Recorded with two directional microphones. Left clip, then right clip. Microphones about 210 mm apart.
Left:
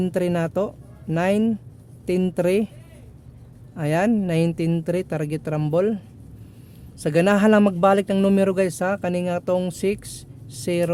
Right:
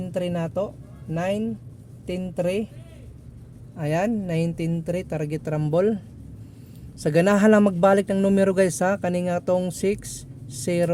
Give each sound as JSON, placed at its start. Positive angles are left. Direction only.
{"t": 0.0, "sound": "speech", "side_deg": 30}
{"t": 3.8, "sound": "speech", "side_deg": 15}
{"t": 7.0, "sound": "speech", "side_deg": 5}